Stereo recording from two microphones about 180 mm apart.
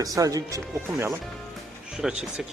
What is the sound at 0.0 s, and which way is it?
Speech, 20° right (ahead or behind).